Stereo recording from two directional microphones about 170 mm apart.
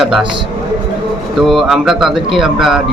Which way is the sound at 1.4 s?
Centre (ahead or behind).